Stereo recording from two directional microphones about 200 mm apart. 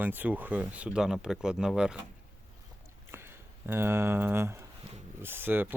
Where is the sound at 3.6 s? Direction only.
10° right (ahead or behind).